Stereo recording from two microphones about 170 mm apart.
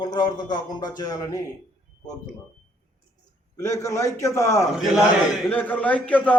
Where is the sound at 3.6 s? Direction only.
20° left (ahead or behind).